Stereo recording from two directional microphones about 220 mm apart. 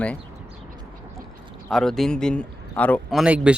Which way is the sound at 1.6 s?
Centre (ahead or behind).